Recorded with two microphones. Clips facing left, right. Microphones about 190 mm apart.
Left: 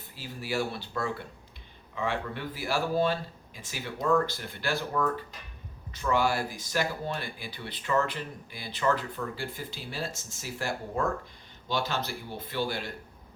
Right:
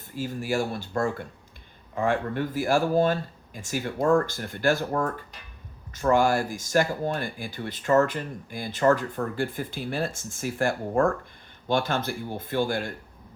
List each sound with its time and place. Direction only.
0.1 s speech: 45° right (ahead or behind)